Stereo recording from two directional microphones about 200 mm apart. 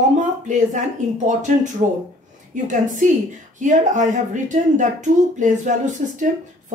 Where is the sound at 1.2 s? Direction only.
35° right (ahead or behind).